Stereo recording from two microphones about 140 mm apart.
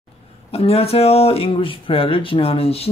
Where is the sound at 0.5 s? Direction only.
45° left (ahead or behind).